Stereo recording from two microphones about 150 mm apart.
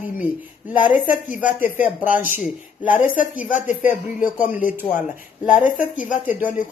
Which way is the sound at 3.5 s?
55° left (ahead or behind).